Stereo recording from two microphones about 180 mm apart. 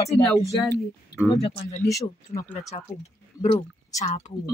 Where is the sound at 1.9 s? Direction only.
15° left (ahead or behind).